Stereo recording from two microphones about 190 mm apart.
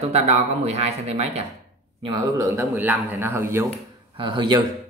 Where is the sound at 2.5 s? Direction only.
10° right (ahead or behind).